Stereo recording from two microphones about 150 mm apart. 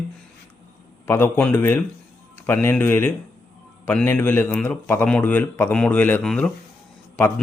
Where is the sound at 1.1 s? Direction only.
15° left (ahead or behind).